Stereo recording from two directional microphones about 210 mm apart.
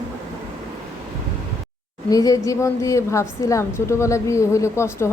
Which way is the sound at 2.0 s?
15° left (ahead or behind).